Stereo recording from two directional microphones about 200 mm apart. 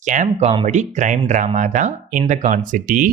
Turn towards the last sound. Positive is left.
turn(degrees=-40)  # may be behind; listen again after turning